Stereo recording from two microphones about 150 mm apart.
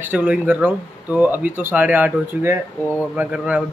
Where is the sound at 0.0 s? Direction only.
10° right (ahead or behind).